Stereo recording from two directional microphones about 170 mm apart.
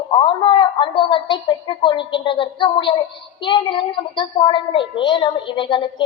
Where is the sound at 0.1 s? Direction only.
30° left (ahead or behind).